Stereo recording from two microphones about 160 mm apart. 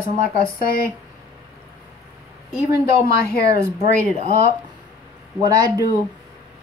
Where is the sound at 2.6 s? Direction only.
20° right (ahead or behind).